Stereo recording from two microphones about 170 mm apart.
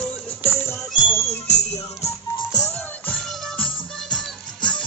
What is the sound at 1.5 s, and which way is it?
Music, 40° left (ahead or behind).